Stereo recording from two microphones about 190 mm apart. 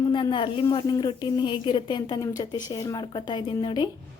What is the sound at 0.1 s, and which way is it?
A woman's voice, 25° left (ahead or behind).